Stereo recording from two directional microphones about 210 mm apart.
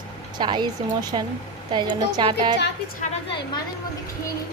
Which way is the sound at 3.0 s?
30° left (ahead or behind).